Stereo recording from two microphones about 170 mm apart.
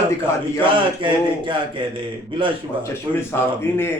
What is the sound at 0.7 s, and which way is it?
A man's voice, 30° right (ahead or behind).